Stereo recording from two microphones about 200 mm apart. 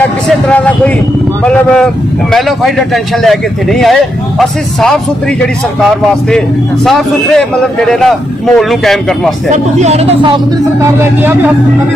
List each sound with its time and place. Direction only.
0.0 s a man's voice: 5° left (ahead or behind)
9.5 s a man's voice: 35° right (ahead or behind)
10.8 s speech: 10° right (ahead or behind)